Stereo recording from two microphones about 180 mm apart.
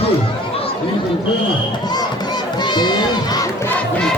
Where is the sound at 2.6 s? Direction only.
25° left (ahead or behind).